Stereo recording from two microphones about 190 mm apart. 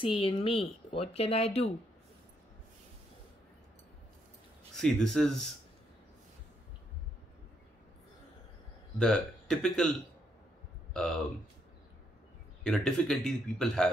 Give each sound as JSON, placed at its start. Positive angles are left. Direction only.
{"t": 0.0, "sound": "speech", "side_deg": 30}
{"t": 4.7, "sound": "a man's voice", "side_deg": 0}
{"t": 8.9, "sound": "speech", "side_deg": 5}
{"t": 10.9, "sound": "a sound", "side_deg": 5}
{"t": 12.6, "sound": "a man's voice", "side_deg": 5}